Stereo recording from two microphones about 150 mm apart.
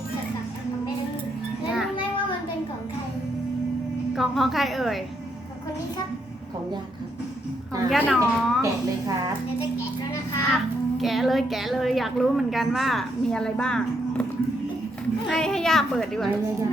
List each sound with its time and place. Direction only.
4.1 s a child's voice: centre (ahead or behind)
7.9 s a child's voice: centre (ahead or behind)
8.6 s a woman's voice: 25° right (ahead or behind)
10.5 s a child's voice: centre (ahead or behind)
15.3 s a child's voice: 5° left (ahead or behind)